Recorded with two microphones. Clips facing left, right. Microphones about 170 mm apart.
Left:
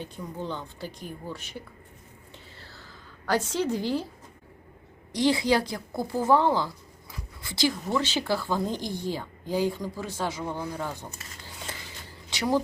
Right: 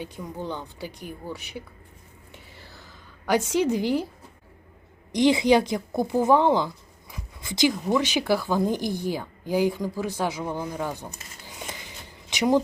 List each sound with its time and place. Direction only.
0.0 s speech: 15° right (ahead or behind)
2.3 s a sound: 15° right (ahead or behind)
5.1 s a woman's voice: 20° right (ahead or behind)